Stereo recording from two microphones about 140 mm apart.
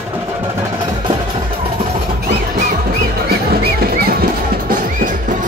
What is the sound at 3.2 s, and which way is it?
Music, 90° right.